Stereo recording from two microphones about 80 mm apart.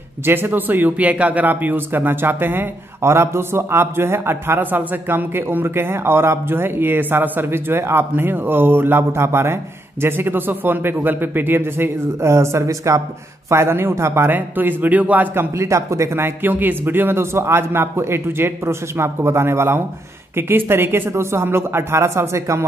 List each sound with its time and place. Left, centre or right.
0.2 s a man's voice: right
15.5 s speech: right